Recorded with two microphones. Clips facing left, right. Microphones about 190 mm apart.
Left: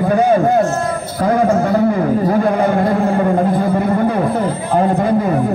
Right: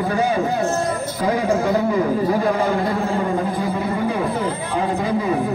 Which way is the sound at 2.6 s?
55° left (ahead or behind).